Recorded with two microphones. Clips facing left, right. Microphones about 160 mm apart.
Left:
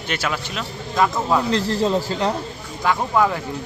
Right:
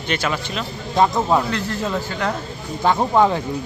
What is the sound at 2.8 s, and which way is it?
Speech, 25° right (ahead or behind).